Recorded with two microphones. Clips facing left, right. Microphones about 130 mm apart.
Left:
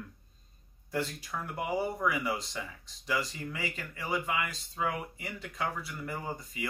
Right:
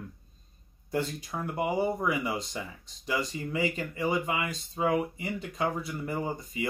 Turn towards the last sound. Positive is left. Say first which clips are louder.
# right 5 dB
turn(degrees=-20)  # may be behind; listen again after turning